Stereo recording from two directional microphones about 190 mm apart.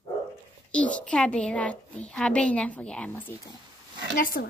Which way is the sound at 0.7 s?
5° left (ahead or behind).